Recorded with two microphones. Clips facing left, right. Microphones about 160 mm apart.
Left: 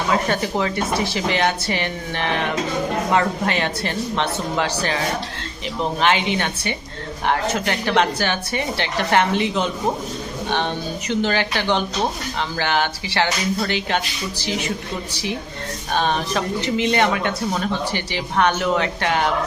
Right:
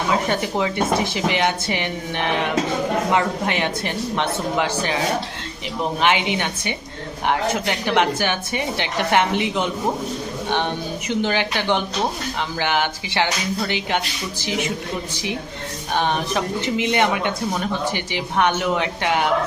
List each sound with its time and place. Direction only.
0.1 s speech: 15° right (ahead or behind)
6.0 s speech: 15° right (ahead or behind)
11.1 s speech: 15° right (ahead or behind)
15.9 s speech: 15° right (ahead or behind)